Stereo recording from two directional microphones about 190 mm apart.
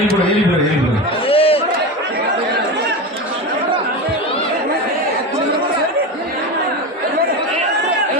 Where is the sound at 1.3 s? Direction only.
30° left (ahead or behind).